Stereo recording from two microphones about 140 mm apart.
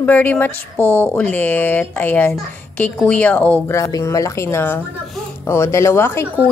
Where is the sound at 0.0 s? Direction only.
10° left (ahead or behind).